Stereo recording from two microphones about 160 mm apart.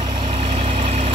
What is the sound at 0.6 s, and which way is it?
Vehicle, 45° right (ahead or behind).